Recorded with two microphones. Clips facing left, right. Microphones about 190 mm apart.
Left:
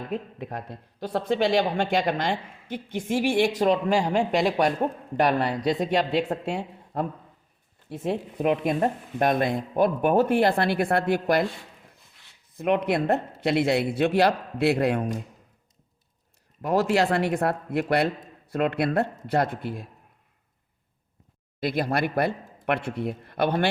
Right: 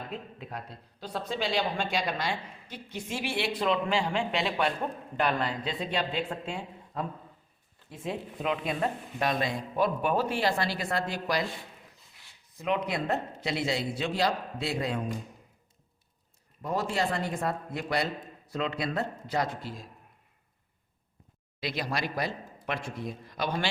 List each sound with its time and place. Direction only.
0.1 s a man's voice: 50° left (ahead or behind)
6.4 s speech: 65° left (ahead or behind)
12.5 s a man's voice: 60° left (ahead or behind)
16.6 s a man's voice: 70° left (ahead or behind)
21.6 s a man's voice: 55° left (ahead or behind)